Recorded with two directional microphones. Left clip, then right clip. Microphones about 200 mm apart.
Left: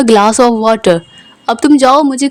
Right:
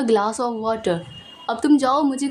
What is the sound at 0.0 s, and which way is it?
Speech, 40° left (ahead or behind).